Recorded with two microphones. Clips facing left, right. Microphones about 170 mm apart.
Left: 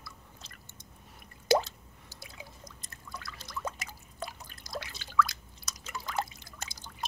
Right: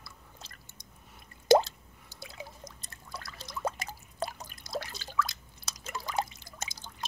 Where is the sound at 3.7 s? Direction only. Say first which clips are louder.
Right 8 dB; 35° right (ahead or behind).